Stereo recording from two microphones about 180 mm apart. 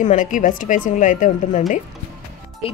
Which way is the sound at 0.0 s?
45° left (ahead or behind).